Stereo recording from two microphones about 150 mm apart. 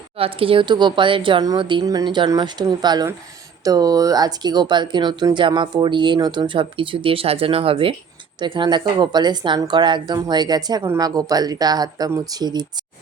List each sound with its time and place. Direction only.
0.2 s a woman's voice: 40° right (ahead or behind)